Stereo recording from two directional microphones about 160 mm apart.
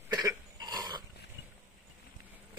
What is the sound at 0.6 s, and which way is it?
Dog, 25° right (ahead or behind).